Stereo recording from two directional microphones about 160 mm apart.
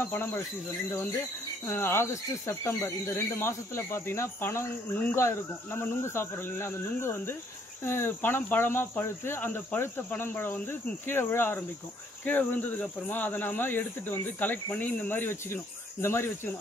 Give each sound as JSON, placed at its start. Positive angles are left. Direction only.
{"t": 0.0, "sound": "speech", "side_deg": 15}
{"t": 1.7, "sound": "speech", "side_deg": 15}